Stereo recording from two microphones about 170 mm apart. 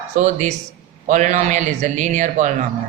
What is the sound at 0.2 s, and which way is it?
Speech, 45° right (ahead or behind).